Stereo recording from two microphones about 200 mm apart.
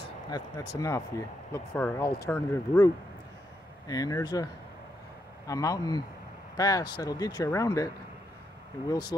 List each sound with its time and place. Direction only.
0.3 s speech: 20° left (ahead or behind)
5.5 s speech: 15° left (ahead or behind)